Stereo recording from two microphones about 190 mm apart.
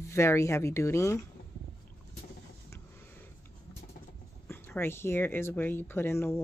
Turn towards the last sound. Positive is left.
turn(degrees=10)  # may be behind; listen again after turning